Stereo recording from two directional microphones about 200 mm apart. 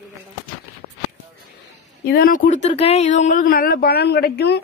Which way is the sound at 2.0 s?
50° left (ahead or behind).